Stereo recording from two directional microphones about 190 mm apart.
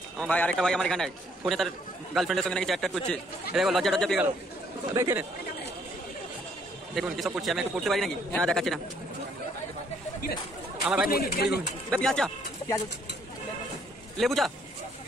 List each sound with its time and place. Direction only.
0.2 s a man's voice: 5° left (ahead or behind)
4.9 s speech: 15° right (ahead or behind)
7.0 s a man's voice: centre (ahead or behind)
11.1 s a man's voice: 55° left (ahead or behind)
11.9 s a man's voice: 5° left (ahead or behind)
14.1 s a man's voice: centre (ahead or behind)